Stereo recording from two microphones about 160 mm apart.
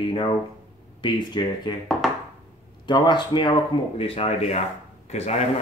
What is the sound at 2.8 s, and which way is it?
Speech, 30° left (ahead or behind).